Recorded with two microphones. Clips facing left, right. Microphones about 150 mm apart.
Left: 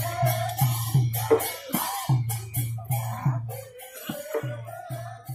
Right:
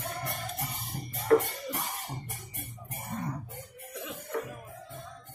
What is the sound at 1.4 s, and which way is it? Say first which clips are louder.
Music: left 5 dB; 90° left.